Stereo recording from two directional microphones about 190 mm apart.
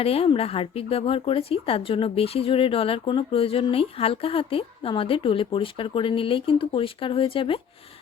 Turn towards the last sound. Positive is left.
turn(degrees=30)  # may be behind; listen again after turning